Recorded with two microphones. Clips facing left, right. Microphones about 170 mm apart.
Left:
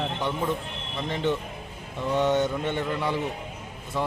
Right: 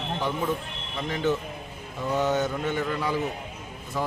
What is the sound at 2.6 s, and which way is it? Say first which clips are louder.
Speech: even; 25° left (ahead or behind).